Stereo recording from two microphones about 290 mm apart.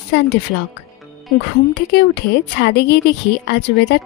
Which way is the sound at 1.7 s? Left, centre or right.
Left.